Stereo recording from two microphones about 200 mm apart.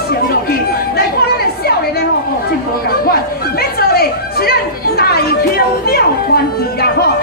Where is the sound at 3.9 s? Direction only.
50° left (ahead or behind).